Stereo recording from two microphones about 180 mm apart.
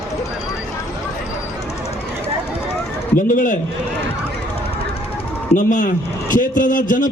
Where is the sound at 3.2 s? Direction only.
50° left (ahead or behind).